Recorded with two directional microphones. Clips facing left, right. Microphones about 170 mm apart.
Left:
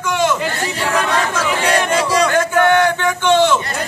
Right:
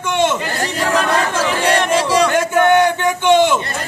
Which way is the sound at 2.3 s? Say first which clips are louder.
Right 1 dB; 20° right (ahead or behind).